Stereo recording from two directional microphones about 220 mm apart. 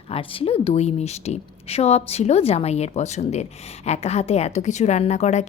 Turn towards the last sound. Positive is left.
turn(degrees=30)  # may be behind; listen again after turning